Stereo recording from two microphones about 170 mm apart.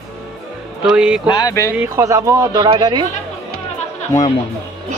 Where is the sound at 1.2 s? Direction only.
25° left (ahead or behind).